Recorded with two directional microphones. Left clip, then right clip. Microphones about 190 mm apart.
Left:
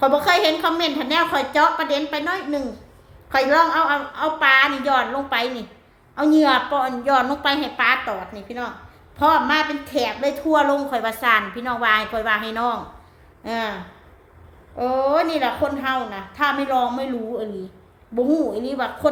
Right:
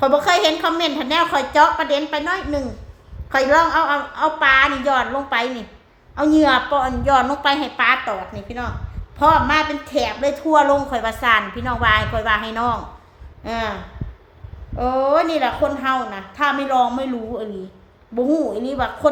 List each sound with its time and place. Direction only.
0.0 s a woman's voice: 5° right (ahead or behind)
14.8 s a woman's voice: 5° right (ahead or behind)